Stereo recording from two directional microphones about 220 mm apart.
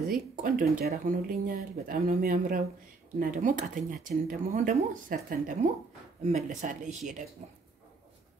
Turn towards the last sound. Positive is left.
turn(degrees=-35)  # may be behind; listen again after turning